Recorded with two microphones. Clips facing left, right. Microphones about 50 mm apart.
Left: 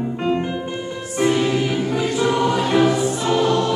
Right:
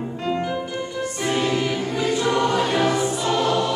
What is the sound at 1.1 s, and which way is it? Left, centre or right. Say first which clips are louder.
Music: left 5 dB; centre.